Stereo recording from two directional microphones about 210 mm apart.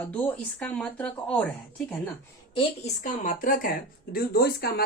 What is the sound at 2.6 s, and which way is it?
Speech, 35° left (ahead or behind).